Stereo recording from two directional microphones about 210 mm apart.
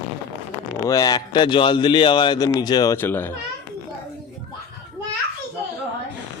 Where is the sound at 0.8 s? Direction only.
15° left (ahead or behind).